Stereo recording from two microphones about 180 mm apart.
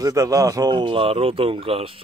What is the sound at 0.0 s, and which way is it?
Speech, 20° right (ahead or behind).